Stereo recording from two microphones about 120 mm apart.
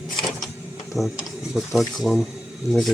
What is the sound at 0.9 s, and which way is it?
Speech, centre (ahead or behind).